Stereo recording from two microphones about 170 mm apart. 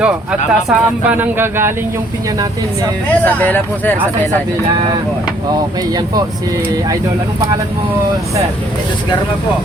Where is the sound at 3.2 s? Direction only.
10° left (ahead or behind).